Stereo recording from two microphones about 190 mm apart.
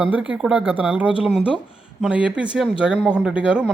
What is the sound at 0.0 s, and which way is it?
Speech, 5° right (ahead or behind).